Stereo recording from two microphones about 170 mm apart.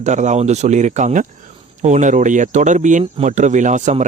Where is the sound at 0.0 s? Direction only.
45° right (ahead or behind).